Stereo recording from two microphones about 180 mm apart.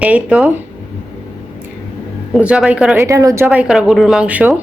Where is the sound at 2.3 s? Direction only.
5° right (ahead or behind).